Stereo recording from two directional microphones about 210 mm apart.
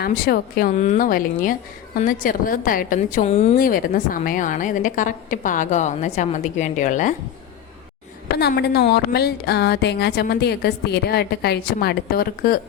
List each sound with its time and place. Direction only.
0.0 s a woman's voice: 45° left (ahead or behind)
8.4 s speech: 50° left (ahead or behind)